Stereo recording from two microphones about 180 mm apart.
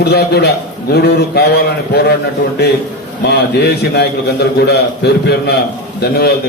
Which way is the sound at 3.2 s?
65° left (ahead or behind).